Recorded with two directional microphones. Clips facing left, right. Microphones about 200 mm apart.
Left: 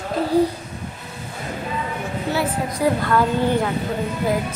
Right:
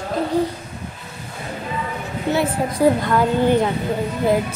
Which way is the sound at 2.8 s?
30° right (ahead or behind).